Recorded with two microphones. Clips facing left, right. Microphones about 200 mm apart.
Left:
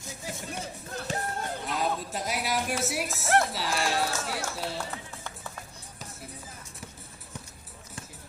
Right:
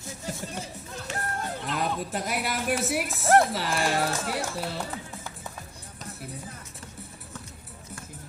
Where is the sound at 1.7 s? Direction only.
55° right (ahead or behind).